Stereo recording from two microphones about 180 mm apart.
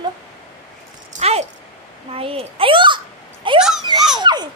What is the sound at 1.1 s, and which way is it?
A child's voice, 35° right (ahead or behind).